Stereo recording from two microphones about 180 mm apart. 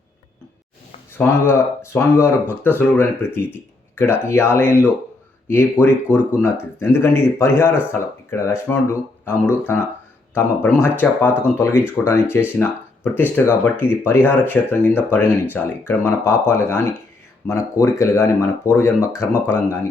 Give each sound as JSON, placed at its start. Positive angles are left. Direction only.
{"t": 1.2, "sound": "speech", "side_deg": 15}
{"t": 5.8, "sound": "speech", "side_deg": -5}
{"t": 6.1, "sound": "speech", "side_deg": 15}